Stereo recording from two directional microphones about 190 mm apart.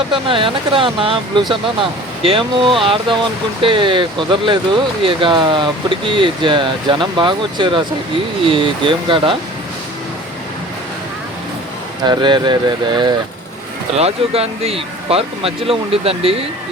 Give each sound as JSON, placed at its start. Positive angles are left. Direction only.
{"t": 0.1, "sound": "speech", "side_deg": -25}
{"t": 12.0, "sound": "speech", "side_deg": -25}